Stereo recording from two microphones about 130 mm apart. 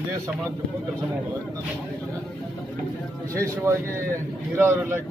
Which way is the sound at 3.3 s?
20° right (ahead or behind).